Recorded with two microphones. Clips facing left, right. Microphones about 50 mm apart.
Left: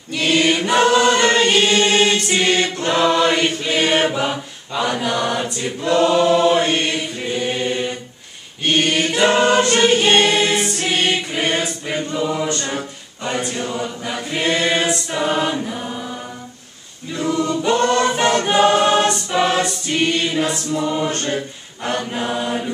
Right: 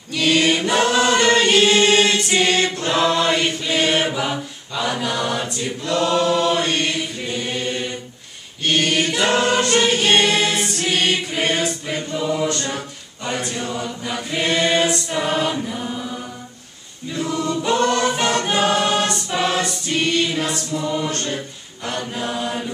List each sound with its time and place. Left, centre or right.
0.1 s choir: centre
5.8 s choir: left
12.6 s a capella: centre
13.6 s choir: centre
17.3 s choir: centre; by 21.4 s left
21.8 s chant: left